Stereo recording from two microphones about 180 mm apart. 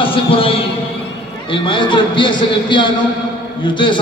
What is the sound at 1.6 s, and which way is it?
A man's voice, 25° left (ahead or behind).